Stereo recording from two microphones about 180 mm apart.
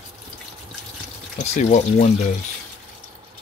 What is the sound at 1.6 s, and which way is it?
Speech, 40° left (ahead or behind).